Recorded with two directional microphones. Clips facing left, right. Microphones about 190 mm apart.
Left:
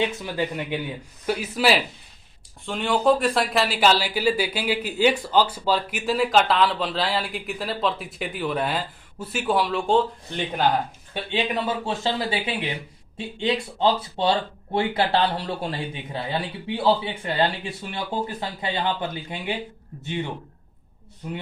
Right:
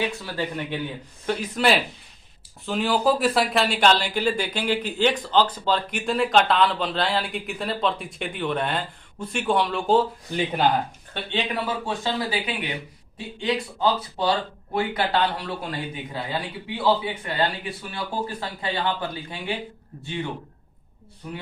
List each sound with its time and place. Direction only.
0.0 s speech: 20° left (ahead or behind); by 10.6 s 5° right (ahead or behind)
11.5 s speech: 25° left (ahead or behind)